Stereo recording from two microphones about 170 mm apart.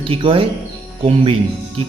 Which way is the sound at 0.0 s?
30° right (ahead or behind).